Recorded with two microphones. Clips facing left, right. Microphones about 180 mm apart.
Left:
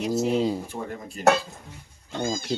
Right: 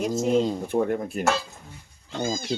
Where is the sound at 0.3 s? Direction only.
5° left (ahead or behind).